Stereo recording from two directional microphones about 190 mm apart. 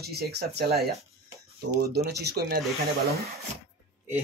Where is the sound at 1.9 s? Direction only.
60° right (ahead or behind).